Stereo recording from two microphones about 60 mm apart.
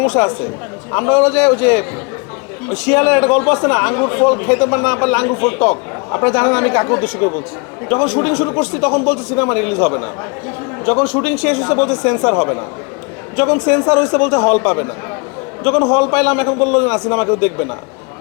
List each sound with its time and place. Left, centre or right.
0.1 s a man's voice: left
6.1 s a man's voice: left
6.3 s a man's voice: left